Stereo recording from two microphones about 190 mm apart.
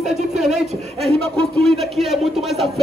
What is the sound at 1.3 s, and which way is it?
Music, centre (ahead or behind).